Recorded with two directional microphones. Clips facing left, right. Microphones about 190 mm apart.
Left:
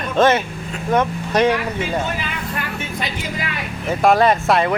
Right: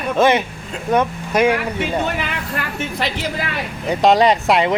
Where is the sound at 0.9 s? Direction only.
10° right (ahead or behind).